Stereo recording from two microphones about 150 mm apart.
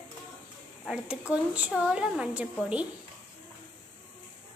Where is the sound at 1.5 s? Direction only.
5° right (ahead or behind).